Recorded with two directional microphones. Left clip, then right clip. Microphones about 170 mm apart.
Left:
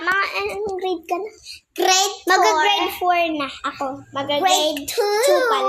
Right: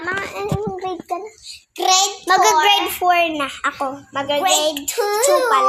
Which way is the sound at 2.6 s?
5° right (ahead or behind).